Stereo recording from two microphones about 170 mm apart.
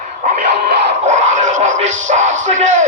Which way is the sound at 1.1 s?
45° right (ahead or behind).